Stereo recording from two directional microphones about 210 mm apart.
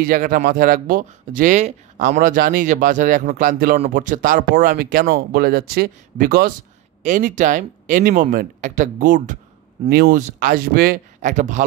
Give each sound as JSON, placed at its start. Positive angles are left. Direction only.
{"t": 0.0, "sound": "speech", "side_deg": -45}